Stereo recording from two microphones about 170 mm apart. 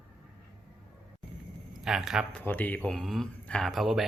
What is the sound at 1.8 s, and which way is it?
Speech, 5° right (ahead or behind).